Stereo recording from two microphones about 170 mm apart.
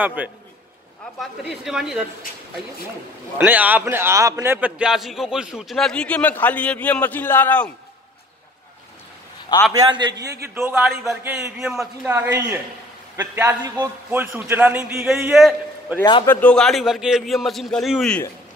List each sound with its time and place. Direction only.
0.0 s a man's voice: 10° right (ahead or behind)
3.3 s a man's voice: 10° right (ahead or behind); by 7.7 s 10° left (ahead or behind)
9.7 s a man's voice: 25° right (ahead or behind)
10.2 s a man's voice: 70° right (ahead or behind)
10.5 s a man's voice: 10° right (ahead or behind)
11.5 s a man's voice: 5° right (ahead or behind)
12.1 s a man's voice: 15° right (ahead or behind)
16.0 s a man's voice: 30° left (ahead or behind)
16.3 s a man's voice: 10° left (ahead or behind)